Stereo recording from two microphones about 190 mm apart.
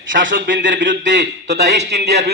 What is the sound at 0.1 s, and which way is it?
Speech, 80° right.